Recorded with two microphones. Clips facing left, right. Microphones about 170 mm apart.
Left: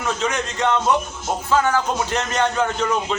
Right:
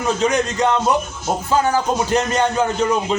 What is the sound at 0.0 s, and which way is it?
Speech, 35° right (ahead or behind).